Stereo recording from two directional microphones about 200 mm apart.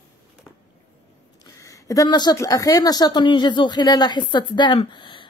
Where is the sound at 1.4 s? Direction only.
15° left (ahead or behind).